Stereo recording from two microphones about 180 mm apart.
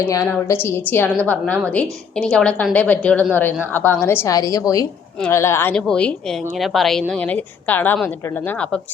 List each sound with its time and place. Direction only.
0.1 s a woman's voice: 15° left (ahead or behind)